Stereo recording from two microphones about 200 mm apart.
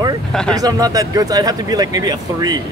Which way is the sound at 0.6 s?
20° right (ahead or behind).